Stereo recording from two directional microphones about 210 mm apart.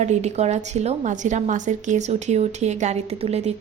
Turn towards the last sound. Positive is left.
turn(degrees=-30)  # may be behind; listen again after turning